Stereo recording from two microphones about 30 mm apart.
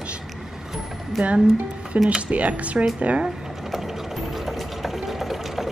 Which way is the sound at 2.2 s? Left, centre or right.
Right.